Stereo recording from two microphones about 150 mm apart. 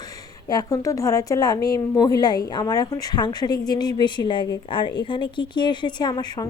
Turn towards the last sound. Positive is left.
turn(degrees=25)  # may be behind; listen again after turning